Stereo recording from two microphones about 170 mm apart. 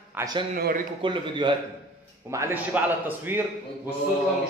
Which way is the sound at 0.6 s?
60° right (ahead or behind).